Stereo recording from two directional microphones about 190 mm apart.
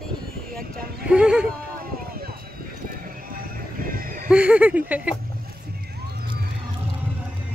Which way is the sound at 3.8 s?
50° right (ahead or behind).